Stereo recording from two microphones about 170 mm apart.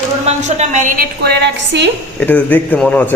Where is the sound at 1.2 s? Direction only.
80° right.